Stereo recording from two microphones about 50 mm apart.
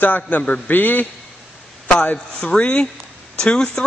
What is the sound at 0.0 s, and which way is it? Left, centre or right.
A man's voice, left.